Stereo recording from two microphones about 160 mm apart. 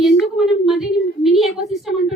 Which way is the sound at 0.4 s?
Centre (ahead or behind).